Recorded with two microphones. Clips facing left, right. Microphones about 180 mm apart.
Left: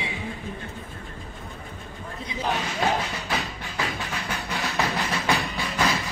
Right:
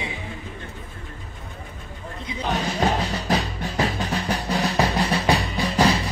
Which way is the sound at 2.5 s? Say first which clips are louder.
Right 4 dB; 40° right (ahead or behind).